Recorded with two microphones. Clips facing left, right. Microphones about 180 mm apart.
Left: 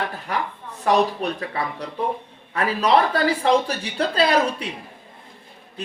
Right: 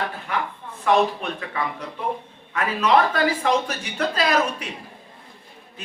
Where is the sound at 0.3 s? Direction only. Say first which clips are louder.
Left 1 dB; 40° left (ahead or behind).